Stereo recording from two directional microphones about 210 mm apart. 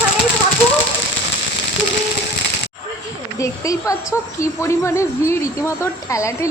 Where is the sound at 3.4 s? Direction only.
15° left (ahead or behind).